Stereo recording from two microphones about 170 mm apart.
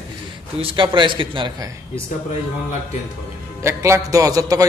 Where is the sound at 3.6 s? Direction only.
15° right (ahead or behind).